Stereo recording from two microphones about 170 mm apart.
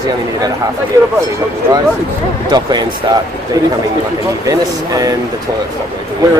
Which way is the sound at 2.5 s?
25° right (ahead or behind).